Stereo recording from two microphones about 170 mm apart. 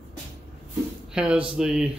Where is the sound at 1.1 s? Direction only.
5° right (ahead or behind).